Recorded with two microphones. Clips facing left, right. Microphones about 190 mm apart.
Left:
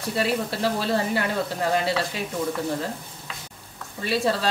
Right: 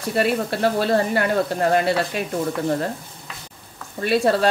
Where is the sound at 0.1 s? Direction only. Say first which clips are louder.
Right 4 dB; 55° right (ahead or behind).